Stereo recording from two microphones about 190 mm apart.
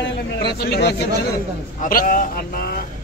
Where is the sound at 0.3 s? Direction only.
60° left (ahead or behind).